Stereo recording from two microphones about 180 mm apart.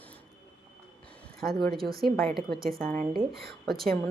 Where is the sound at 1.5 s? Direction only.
60° right (ahead or behind).